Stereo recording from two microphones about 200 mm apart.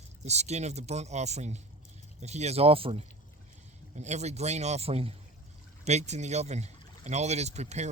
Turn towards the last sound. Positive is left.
turn(degrees=-35)  # may be behind; listen again after turning